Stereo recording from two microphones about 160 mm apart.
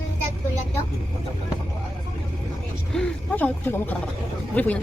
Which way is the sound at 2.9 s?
5° left (ahead or behind).